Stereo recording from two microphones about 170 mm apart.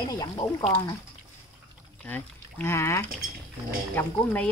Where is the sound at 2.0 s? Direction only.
10° left (ahead or behind).